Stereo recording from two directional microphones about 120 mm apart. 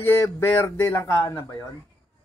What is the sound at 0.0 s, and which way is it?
Speech, 20° left (ahead or behind).